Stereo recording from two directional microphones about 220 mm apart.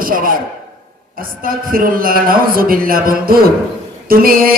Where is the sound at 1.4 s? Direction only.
40° right (ahead or behind).